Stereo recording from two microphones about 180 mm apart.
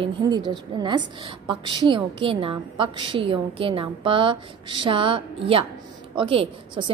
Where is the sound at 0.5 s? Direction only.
25° right (ahead or behind).